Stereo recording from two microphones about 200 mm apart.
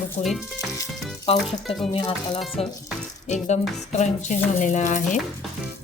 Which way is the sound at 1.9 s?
25° left (ahead or behind).